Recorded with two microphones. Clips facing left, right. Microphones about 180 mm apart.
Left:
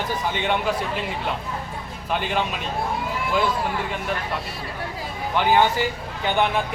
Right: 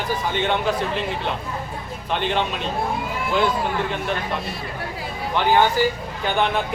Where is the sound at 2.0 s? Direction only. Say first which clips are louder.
Right 2 dB; 10° left (ahead or behind).